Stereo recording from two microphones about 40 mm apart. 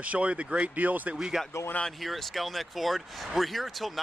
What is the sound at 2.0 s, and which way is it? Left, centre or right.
Speech, centre.